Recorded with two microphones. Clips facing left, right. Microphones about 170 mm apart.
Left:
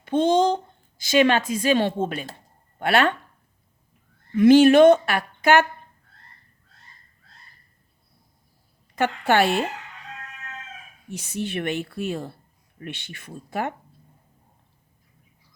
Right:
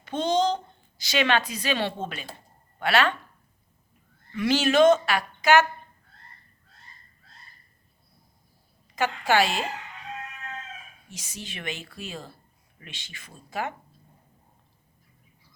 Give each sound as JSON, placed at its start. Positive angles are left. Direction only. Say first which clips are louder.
{"t": 0.0, "sound": "a woman's voice", "louder": "left 5 dB", "side_deg": 50}
{"t": 4.4, "sound": "a woman's voice", "louder": "left 8 dB", "side_deg": 50}
{"t": 9.0, "sound": "a woman's voice", "louder": "left 3 dB", "side_deg": 60}
{"t": 11.1, "sound": "a woman's voice", "louder": "left 12 dB", "side_deg": 60}